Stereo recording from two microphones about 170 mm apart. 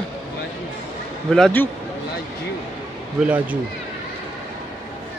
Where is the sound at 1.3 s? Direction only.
5° left (ahead or behind).